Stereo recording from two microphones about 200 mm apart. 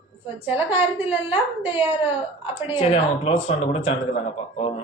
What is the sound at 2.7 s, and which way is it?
Speech, 30° left (ahead or behind).